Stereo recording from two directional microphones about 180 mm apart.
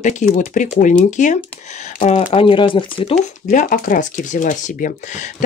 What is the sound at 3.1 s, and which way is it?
Speech, 50° left (ahead or behind).